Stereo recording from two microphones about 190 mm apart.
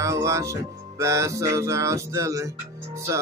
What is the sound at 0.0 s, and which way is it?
Music, 15° right (ahead or behind).